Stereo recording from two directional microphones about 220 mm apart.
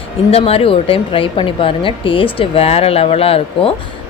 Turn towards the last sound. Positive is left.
turn(degrees=25)  # may be behind; listen again after turning